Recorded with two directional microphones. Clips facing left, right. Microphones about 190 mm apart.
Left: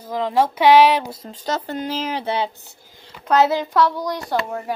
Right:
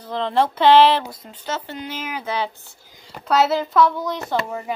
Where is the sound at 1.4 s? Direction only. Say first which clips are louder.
Left 4 dB; 40° left (ahead or behind); by 2.5 s 25° left (ahead or behind).